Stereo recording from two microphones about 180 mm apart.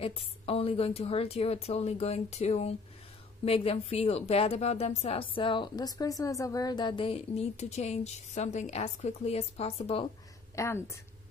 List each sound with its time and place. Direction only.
0.0 s a woman's voice: 30° left (ahead or behind)
10.5 s a woman's voice: 15° left (ahead or behind)